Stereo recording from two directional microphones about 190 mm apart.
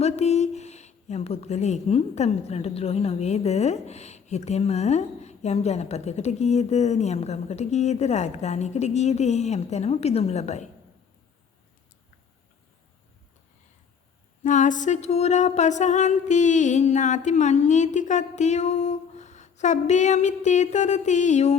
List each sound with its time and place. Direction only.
0.0 s speech: 35° left (ahead or behind)
14.4 s speech: 40° left (ahead or behind)